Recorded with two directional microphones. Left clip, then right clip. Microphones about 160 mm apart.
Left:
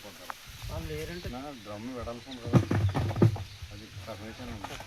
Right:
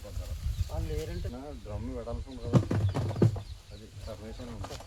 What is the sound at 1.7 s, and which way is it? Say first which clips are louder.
Speech: even; 30° right (ahead or behind).